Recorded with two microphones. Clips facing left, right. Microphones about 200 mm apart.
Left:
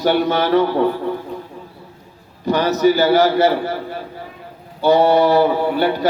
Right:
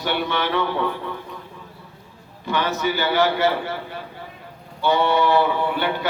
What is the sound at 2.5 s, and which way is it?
A man's voice, 40° left (ahead or behind).